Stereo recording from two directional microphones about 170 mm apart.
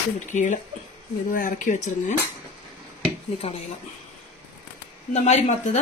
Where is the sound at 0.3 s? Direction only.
45° left (ahead or behind).